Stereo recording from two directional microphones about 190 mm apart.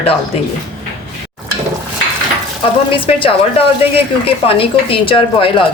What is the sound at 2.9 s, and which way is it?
A woman's voice, 30° left (ahead or behind).